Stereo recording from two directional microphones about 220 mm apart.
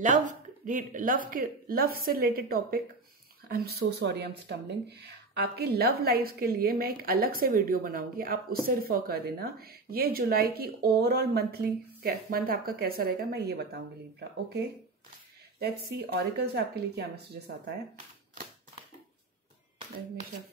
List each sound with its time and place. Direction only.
0.0 s a woman's voice: 35° right (ahead or behind)
15.6 s a woman's voice: 45° right (ahead or behind)